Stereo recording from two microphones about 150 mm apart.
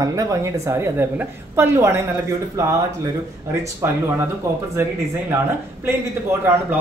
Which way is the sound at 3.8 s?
15° right (ahead or behind).